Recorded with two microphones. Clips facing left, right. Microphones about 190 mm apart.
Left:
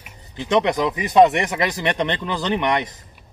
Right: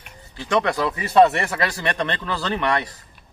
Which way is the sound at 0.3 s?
20° left (ahead or behind).